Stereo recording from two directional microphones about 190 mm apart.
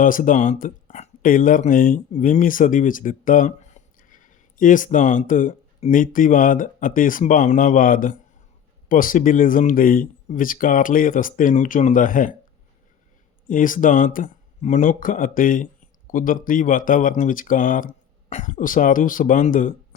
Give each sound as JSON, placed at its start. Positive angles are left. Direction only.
{"t": 0.0, "sound": "speech", "side_deg": 45}
{"t": 13.5, "sound": "speech", "side_deg": 45}